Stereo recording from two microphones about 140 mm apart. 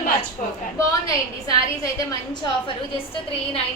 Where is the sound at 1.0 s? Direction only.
25° left (ahead or behind).